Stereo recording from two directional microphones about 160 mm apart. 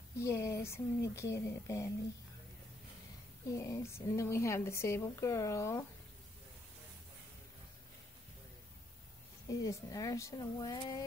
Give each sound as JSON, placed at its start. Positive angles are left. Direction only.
{"t": 0.2, "sound": "speech", "side_deg": 20}
{"t": 3.4, "sound": "a woman's voice", "side_deg": 20}
{"t": 9.5, "sound": "a woman's voice", "side_deg": 20}